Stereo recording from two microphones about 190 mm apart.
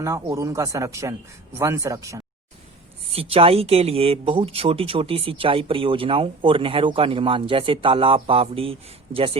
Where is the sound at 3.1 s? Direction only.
30° right (ahead or behind).